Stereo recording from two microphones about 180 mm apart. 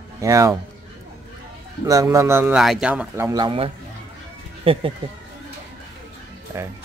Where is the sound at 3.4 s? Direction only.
30° right (ahead or behind).